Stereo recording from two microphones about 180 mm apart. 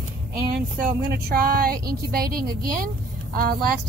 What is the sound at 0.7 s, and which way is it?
Speech, 55° right (ahead or behind).